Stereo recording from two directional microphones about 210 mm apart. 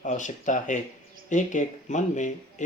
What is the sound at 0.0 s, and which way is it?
Speech, 35° left (ahead or behind).